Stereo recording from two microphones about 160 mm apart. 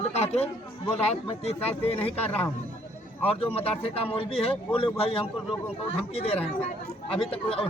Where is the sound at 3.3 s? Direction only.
35° left (ahead or behind).